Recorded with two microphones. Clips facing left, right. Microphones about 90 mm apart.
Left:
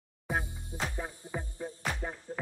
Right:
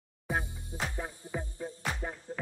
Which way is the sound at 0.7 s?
20° right (ahead or behind).